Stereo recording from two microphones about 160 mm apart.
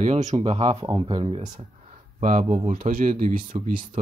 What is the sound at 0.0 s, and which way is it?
Speech, 45° right (ahead or behind).